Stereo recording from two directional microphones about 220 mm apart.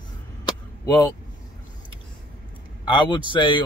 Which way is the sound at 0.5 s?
15° left (ahead or behind).